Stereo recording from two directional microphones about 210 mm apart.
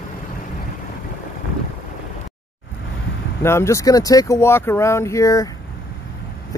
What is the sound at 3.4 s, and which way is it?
Speech, 15° left (ahead or behind).